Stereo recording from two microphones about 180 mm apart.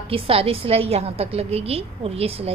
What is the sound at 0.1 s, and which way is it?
A woman's voice, 30° right (ahead or behind).